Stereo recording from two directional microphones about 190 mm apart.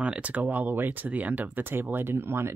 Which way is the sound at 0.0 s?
5° right (ahead or behind).